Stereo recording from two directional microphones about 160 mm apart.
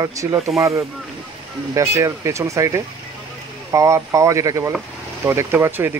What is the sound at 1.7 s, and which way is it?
Speech, 20° right (ahead or behind).